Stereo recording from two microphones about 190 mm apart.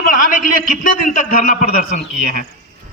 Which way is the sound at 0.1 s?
45° left (ahead or behind).